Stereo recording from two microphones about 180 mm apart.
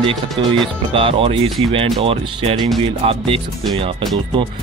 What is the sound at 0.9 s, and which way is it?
Music, 30° right (ahead or behind).